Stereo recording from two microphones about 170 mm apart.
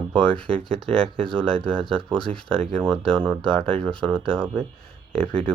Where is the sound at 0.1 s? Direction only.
5° left (ahead or behind).